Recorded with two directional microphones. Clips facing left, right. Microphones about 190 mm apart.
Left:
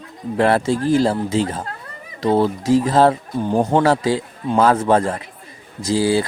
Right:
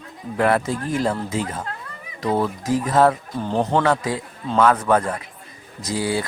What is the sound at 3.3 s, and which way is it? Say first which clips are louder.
Speech: left 4 dB; 15° left (ahead or behind).